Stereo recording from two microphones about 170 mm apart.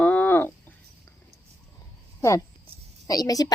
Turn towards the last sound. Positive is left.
turn(degrees=20)  # may be behind; listen again after turning